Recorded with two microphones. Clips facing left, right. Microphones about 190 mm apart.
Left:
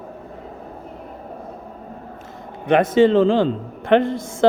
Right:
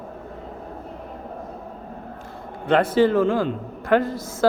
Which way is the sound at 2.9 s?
25° left (ahead or behind).